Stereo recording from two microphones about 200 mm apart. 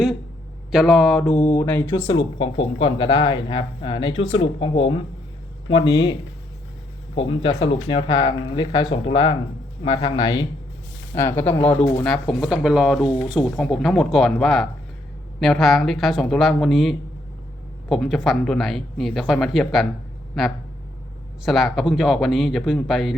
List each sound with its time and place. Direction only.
0.7 s speech: centre (ahead or behind)
2.0 s speech: 25° left (ahead or behind)
7.2 s speech: 25° left (ahead or behind); by 23.1 s centre (ahead or behind)